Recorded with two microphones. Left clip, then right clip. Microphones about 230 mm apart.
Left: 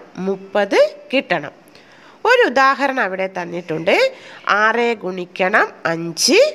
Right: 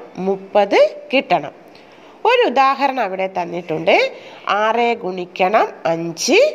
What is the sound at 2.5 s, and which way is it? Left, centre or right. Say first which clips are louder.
A woman's voice: even; left.